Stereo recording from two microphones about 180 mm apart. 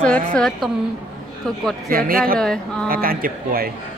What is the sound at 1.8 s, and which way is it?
Speech, 55° right (ahead or behind).